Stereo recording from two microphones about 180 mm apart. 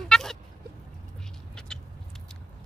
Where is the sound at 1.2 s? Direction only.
5° left (ahead or behind).